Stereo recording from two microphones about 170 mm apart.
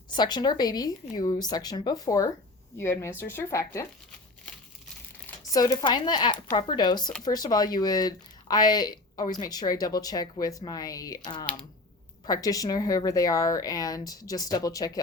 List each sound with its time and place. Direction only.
0.1 s speech: 25° left (ahead or behind)
5.2 s speech: 20° left (ahead or behind)